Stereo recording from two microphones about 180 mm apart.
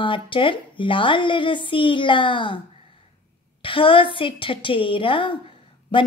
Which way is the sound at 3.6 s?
30° left (ahead or behind).